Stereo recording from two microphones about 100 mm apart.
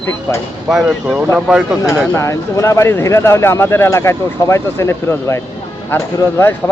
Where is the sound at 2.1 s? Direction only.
30° left (ahead or behind).